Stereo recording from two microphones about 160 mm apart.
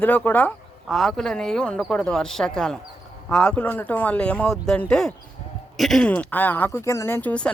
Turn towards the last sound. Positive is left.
turn(degrees=10)  # may be behind; listen again after turning